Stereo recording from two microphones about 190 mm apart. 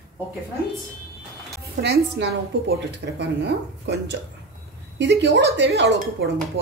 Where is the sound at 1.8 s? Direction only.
60° right (ahead or behind).